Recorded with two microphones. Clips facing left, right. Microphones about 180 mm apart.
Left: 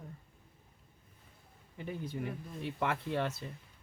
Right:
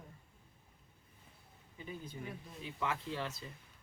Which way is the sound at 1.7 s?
60° left (ahead or behind).